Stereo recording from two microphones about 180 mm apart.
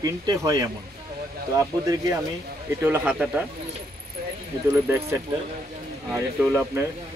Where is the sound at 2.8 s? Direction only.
10° right (ahead or behind).